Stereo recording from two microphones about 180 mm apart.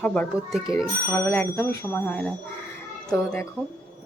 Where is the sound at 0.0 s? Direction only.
5° left (ahead or behind).